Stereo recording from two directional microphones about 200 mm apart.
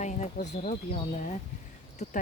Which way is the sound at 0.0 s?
35° left (ahead or behind).